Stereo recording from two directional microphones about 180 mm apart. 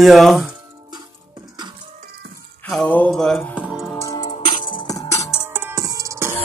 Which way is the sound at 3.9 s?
20° left (ahead or behind).